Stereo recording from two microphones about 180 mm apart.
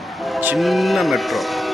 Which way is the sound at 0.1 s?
Centre (ahead or behind).